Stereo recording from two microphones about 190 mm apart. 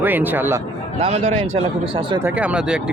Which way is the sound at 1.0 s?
35° right (ahead or behind).